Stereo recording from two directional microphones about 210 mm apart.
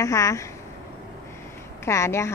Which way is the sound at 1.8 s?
15° left (ahead or behind).